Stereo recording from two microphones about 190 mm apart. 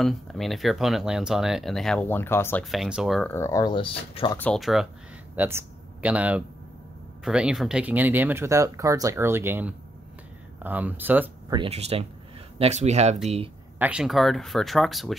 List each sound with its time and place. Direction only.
0.0 s speech: centre (ahead or behind)
2.7 s speech: centre (ahead or behind)
3.3 s speech: 15° left (ahead or behind)
4.4 s speech: 5° left (ahead or behind)
5.3 s speech: 10° right (ahead or behind)
11.5 s speech: 30° right (ahead or behind)
13.7 s speech: 5° right (ahead or behind)